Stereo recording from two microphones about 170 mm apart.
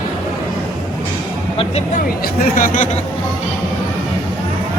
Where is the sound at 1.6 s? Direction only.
40° left (ahead or behind).